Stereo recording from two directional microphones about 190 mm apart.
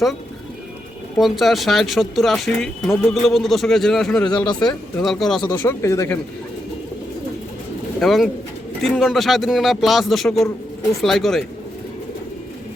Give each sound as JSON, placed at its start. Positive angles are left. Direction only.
{"t": 1.2, "sound": "speech", "side_deg": 0}
{"t": 4.3, "sound": "speech", "side_deg": 20}
{"t": 4.9, "sound": "speech", "side_deg": 0}
{"t": 5.4, "sound": "speech", "side_deg": 15}
{"t": 7.9, "sound": "speech", "side_deg": 0}